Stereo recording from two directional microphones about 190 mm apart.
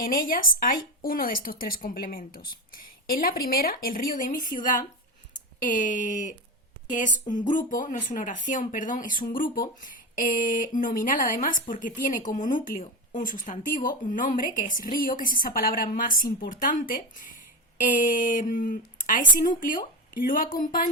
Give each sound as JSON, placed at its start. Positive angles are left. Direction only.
{"t": 0.0, "sound": "speech", "side_deg": 45}